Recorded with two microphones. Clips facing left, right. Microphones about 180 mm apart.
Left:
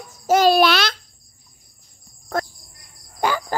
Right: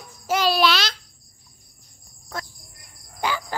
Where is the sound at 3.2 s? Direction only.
50° left (ahead or behind).